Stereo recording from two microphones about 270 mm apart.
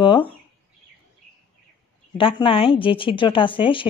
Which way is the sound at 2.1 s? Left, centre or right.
Centre.